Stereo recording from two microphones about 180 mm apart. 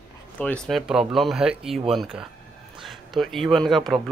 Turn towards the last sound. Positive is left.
turn(degrees=0)  # may be behind; listen again after turning